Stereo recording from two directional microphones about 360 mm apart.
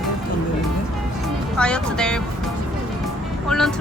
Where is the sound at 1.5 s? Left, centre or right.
Centre.